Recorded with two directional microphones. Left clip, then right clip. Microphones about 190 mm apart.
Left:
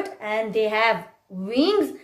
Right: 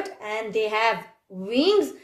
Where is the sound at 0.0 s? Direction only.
30° right (ahead or behind).